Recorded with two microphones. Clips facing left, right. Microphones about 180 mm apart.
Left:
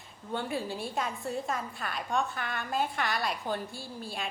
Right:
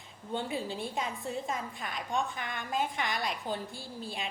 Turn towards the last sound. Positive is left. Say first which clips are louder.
# left 1 dB
turn(degrees=-20)  # may be behind; listen again after turning